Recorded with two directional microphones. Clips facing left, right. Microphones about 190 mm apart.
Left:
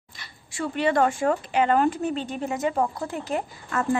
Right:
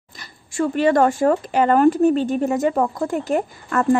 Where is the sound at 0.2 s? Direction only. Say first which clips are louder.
Right 8 dB; 45° right (ahead or behind).